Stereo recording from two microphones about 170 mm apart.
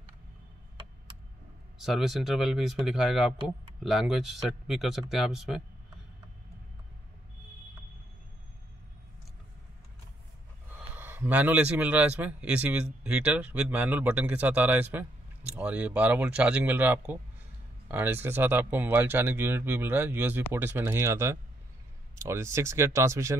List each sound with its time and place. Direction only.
1.8 s speech: centre (ahead or behind)
11.0 s speech: 10° right (ahead or behind)